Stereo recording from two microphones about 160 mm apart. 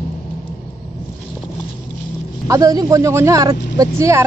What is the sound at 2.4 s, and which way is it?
Speech, 20° right (ahead or behind).